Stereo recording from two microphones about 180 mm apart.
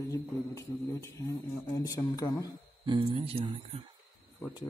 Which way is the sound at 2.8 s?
25° right (ahead or behind).